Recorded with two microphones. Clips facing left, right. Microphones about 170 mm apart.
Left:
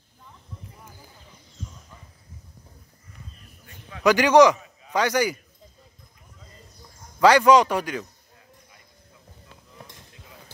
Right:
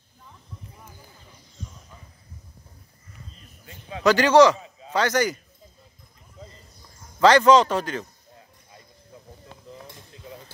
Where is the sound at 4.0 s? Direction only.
15° left (ahead or behind).